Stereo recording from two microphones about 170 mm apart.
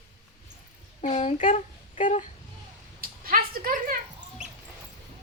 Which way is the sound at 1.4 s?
50° left (ahead or behind).